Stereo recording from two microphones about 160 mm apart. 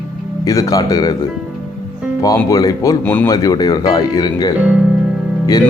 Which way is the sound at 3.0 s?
10° left (ahead or behind).